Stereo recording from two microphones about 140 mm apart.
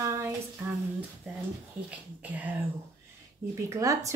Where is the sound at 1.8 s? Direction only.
10° right (ahead or behind).